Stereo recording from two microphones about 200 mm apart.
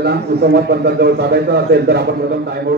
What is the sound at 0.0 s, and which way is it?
A man's voice, 55° right (ahead or behind).